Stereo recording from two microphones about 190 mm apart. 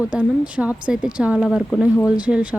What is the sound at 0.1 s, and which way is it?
Speech, 5° right (ahead or behind).